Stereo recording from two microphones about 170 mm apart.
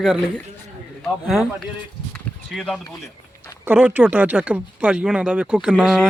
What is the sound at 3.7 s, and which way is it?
Speech, 10° right (ahead or behind).